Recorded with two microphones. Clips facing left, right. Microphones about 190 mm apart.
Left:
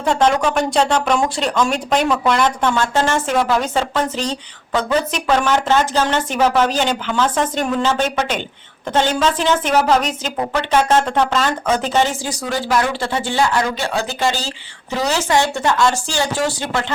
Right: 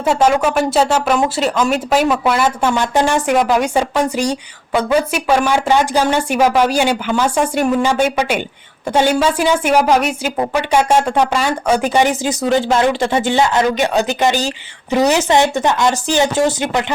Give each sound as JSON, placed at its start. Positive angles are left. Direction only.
{"t": 0.0, "sound": "speech", "side_deg": -5}